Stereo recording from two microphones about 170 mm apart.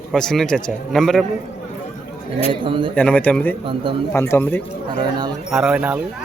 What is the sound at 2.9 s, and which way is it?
Speech, 5° left (ahead or behind).